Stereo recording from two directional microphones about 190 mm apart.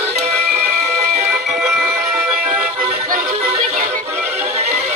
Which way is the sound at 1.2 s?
10° right (ahead or behind).